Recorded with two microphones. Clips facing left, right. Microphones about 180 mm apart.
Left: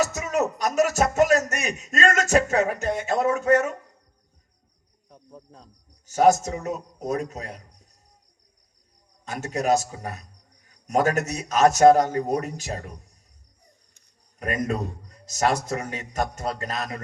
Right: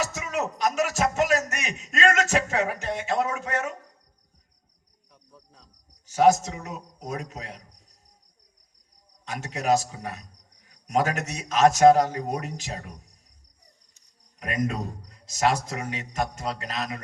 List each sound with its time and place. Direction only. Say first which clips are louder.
0.0 s speech: left 5 dB; 45° left (ahead or behind)
5.1 s cricket: left 9 dB; 45° left (ahead or behind)
6.1 s a man's voice: left 1 dB; 45° left (ahead or behind)
9.2 s a man's voice: left 2 dB; 45° left (ahead or behind)
14.3 s a man's voice: left 2 dB; 45° left (ahead or behind)